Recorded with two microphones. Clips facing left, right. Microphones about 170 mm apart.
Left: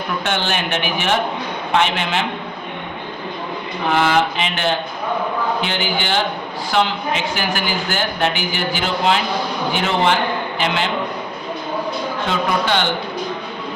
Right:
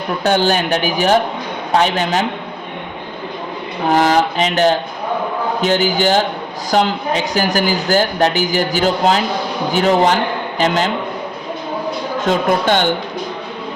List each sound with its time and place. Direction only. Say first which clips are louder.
0.3 s a man's voice: right 9 dB; 40° right (ahead or behind)
3.8 s a man's voice: right 3 dB; 40° right (ahead or behind)
12.2 s speech: right 6 dB; 45° right (ahead or behind)